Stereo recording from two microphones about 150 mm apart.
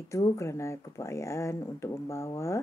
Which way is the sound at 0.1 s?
20° left (ahead or behind).